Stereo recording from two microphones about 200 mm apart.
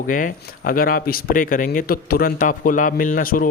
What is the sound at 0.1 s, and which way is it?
A man's voice, 40° left (ahead or behind).